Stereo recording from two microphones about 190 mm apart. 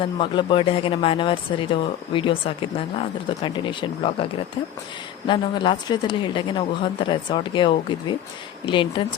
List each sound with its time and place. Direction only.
0.0 s a woman's voice: 25° left (ahead or behind)
3.4 s a woman's voice: 25° left (ahead or behind)